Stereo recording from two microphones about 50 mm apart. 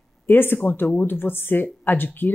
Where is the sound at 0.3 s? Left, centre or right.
Left.